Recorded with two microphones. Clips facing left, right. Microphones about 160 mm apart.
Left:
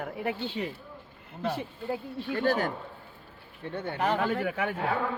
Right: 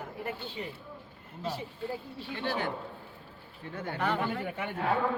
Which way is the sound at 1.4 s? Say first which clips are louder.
Left 3 dB; 65° left (ahead or behind).